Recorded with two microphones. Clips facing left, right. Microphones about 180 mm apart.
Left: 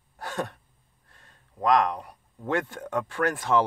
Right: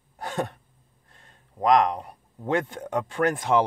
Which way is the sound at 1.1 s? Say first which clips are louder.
Right 2 dB; 20° right (ahead or behind).